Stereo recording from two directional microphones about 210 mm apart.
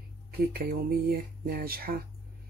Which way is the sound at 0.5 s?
45° right (ahead or behind).